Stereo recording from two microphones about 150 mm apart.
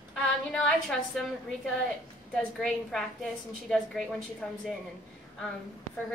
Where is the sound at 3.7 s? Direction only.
5° left (ahead or behind).